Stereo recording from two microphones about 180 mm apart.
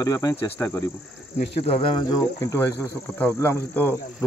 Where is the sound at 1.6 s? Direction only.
30° left (ahead or behind).